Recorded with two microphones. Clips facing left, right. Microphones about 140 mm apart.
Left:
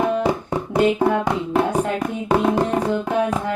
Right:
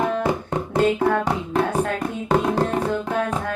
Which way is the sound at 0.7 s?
15° left (ahead or behind).